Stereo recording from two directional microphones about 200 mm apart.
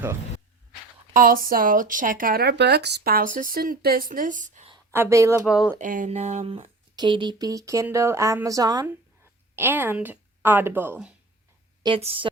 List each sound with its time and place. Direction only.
1.1 s speech: 45° right (ahead or behind)
4.9 s speech: 15° right (ahead or behind)
5.8 s a woman's voice: 40° right (ahead or behind); by 11.1 s 10° right (ahead or behind)
11.8 s a woman's voice: 25° right (ahead or behind)